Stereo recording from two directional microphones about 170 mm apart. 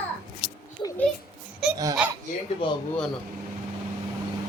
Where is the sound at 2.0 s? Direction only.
5° right (ahead or behind).